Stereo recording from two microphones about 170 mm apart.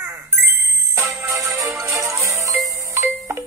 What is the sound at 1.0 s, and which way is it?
Music, 15° right (ahead or behind).